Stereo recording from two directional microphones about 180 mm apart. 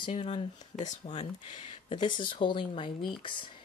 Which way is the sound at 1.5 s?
25° left (ahead or behind).